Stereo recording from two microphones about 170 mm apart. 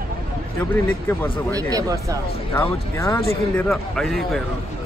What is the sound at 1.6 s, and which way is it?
Speech, 20° right (ahead or behind).